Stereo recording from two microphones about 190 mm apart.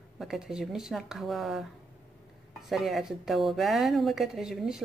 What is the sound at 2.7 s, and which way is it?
Speech, centre (ahead or behind).